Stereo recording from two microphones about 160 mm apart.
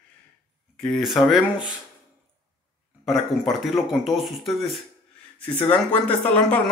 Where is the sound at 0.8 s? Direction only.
Centre (ahead or behind).